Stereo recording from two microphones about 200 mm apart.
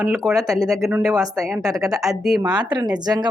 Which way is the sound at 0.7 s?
Centre (ahead or behind).